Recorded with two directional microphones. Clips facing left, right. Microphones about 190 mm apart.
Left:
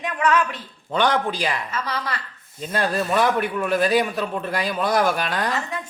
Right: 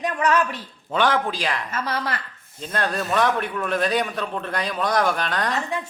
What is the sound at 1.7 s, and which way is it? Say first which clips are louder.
Speech: right 1 dB; 45° right (ahead or behind).